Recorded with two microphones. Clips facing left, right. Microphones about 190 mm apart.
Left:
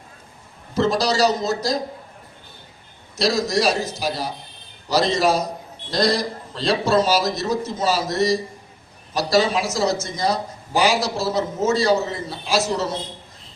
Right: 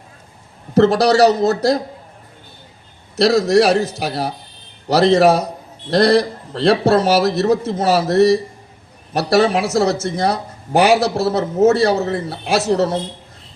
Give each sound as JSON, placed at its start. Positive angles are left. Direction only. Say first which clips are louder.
{"t": 0.7, "sound": "speech", "louder": "right 7 dB", "side_deg": -65}
{"t": 3.2, "sound": "speech", "louder": "right 8 dB", "side_deg": -65}